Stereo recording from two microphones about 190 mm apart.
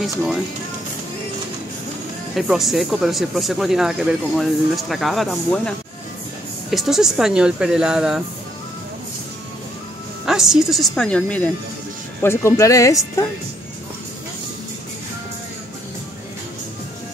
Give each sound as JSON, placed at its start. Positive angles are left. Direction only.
{"t": 0.0, "sound": "speech", "side_deg": 0}
{"t": 2.3, "sound": "speech", "side_deg": 0}
{"t": 10.2, "sound": "speech", "side_deg": -5}